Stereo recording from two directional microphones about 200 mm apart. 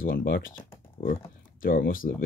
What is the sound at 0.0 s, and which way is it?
Speech, 50° left (ahead or behind).